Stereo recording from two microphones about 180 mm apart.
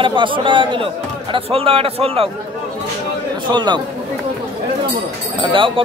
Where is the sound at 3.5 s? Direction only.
25° right (ahead or behind).